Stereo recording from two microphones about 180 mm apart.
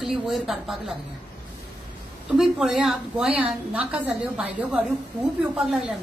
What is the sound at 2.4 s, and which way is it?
Speech, centre (ahead or behind).